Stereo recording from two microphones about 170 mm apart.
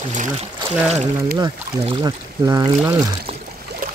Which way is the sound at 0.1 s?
45° right (ahead or behind).